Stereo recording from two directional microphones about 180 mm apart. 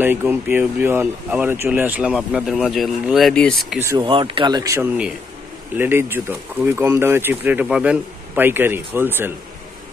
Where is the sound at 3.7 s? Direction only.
15° right (ahead or behind).